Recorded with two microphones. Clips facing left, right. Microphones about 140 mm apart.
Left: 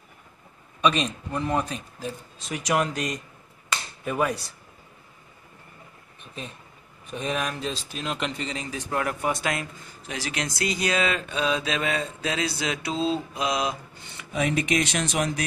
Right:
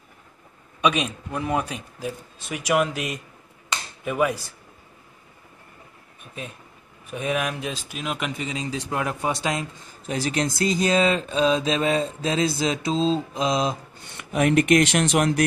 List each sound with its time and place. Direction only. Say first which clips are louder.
0.7 s speech: right 1 dB; 10° right (ahead or behind)
7.1 s speech: right 3 dB; 10° right (ahead or behind)
10.0 s speech: right 7 dB; 40° right (ahead or behind)
14.0 s speech: right 5 dB; 55° right (ahead or behind)